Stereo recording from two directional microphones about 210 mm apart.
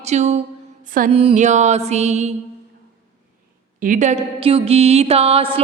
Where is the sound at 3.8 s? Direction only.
35° right (ahead or behind).